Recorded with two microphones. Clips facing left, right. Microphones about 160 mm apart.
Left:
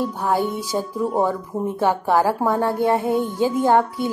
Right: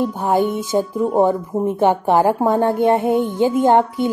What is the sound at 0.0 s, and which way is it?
Speech, 20° right (ahead or behind).